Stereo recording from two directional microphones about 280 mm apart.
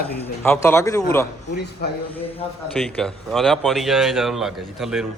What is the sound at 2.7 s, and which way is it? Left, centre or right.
Speech, centre.